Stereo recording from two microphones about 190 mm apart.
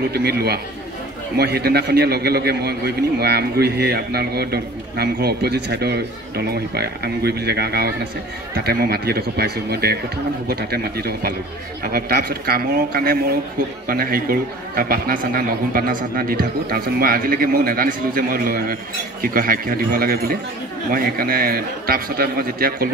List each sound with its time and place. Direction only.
0.1 s a man's voice: 55° right (ahead or behind)